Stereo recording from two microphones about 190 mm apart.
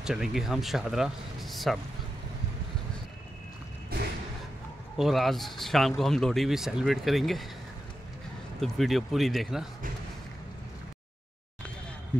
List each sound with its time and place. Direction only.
0.0 s speech: 5° right (ahead or behind)
3.9 s a sound: 55° right (ahead or behind)
4.9 s speech: centre (ahead or behind)
8.5 s speech: centre (ahead or behind)